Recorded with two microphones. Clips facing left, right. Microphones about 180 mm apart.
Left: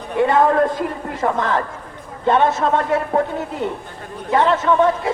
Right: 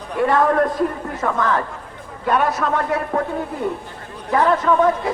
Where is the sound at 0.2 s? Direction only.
25° left (ahead or behind).